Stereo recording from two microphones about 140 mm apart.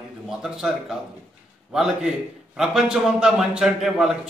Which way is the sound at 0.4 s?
5° right (ahead or behind).